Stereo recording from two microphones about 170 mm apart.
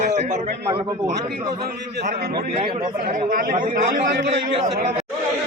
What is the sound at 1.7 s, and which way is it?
Speech, 65° right (ahead or behind).